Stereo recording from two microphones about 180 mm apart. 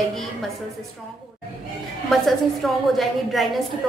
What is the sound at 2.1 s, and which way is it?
A woman's voice, centre (ahead or behind).